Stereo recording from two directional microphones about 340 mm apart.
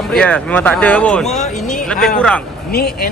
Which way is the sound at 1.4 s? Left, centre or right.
Left.